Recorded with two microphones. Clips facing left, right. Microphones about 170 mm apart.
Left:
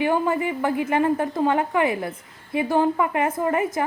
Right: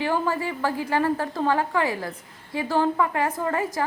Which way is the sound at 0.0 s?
20° left (ahead or behind).